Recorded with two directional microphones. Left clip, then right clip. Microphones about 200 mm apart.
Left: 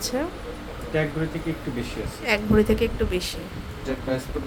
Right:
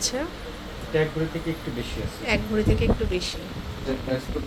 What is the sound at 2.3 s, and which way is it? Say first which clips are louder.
A woman's voice: left 4 dB; 25° left (ahead or behind).